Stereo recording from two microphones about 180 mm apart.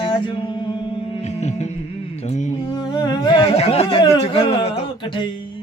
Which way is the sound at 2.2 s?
45° left (ahead or behind).